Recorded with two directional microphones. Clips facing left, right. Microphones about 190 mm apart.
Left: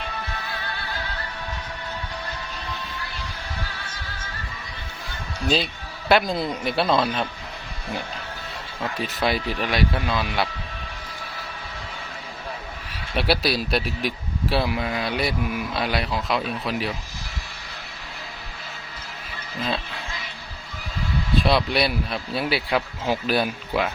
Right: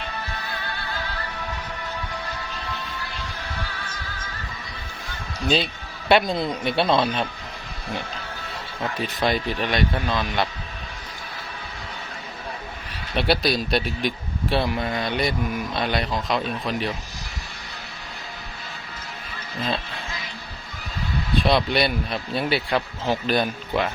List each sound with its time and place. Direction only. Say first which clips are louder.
6.1 s speech: right 1 dB; centre (ahead or behind)
9.0 s speech: right 1 dB; 5° left (ahead or behind)
13.1 s speech: right 1 dB; 5° left (ahead or behind)
21.4 s speech: right 2 dB; centre (ahead or behind)